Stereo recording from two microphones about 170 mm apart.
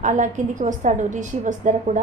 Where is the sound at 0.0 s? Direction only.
45° right (ahead or behind).